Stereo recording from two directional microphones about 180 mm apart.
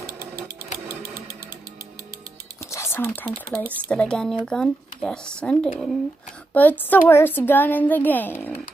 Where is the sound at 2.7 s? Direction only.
15° left (ahead or behind).